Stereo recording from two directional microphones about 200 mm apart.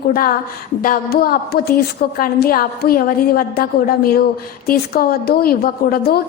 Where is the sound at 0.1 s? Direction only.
45° left (ahead or behind).